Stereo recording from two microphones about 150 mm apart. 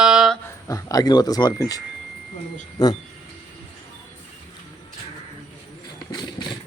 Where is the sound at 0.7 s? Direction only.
20° left (ahead or behind).